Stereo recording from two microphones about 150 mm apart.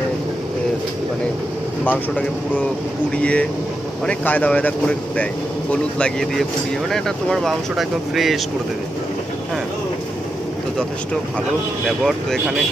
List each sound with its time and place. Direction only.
1.9 s speech: 10° left (ahead or behind)
12.0 s speech: 5° right (ahead or behind)